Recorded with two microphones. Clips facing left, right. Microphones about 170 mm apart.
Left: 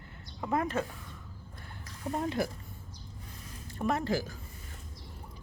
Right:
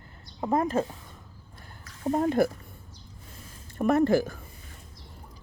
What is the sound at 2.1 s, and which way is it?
Speech, 45° right (ahead or behind).